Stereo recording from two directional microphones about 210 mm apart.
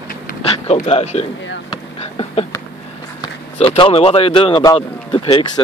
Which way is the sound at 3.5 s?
25° left (ahead or behind).